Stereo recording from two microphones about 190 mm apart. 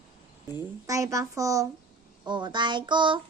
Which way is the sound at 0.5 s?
15° right (ahead or behind).